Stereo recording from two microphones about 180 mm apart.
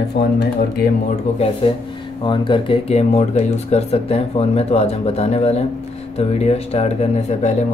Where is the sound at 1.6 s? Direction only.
35° left (ahead or behind).